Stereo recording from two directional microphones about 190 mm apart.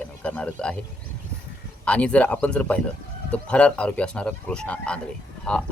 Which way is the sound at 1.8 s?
5° left (ahead or behind).